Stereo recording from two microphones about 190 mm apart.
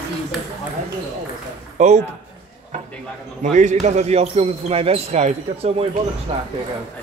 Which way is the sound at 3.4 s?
40° right (ahead or behind).